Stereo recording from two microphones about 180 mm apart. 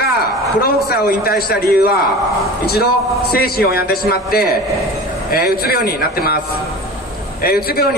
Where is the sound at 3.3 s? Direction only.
60° left (ahead or behind).